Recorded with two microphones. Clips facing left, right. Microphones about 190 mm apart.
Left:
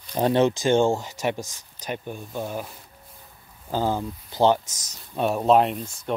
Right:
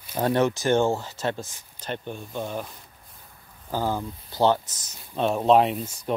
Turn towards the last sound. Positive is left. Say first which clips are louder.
# right 1 dB
turn(degrees=0)  # may be behind; listen again after turning